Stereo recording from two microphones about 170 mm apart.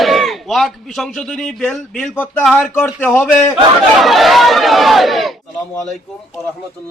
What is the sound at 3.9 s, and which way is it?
Speech, centre (ahead or behind).